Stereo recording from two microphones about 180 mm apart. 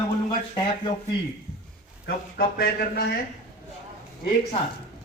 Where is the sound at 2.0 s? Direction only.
60° left (ahead or behind).